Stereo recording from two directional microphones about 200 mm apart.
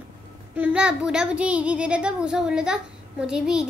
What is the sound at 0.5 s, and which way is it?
A child's voice, 5° right (ahead or behind).